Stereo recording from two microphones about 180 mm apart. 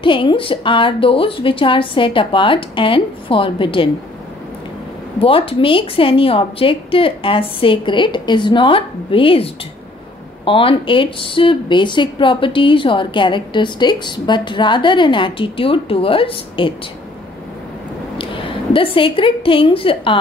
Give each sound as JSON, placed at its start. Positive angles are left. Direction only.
{"t": 0.0, "sound": "speech", "side_deg": 25}
{"t": 5.2, "sound": "speech", "side_deg": 30}
{"t": 18.1, "sound": "a woman's voice", "side_deg": 30}